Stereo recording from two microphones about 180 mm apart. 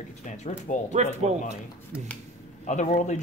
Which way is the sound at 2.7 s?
40° left (ahead or behind).